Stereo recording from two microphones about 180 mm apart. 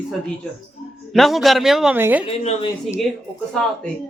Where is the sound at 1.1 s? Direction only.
Centre (ahead or behind).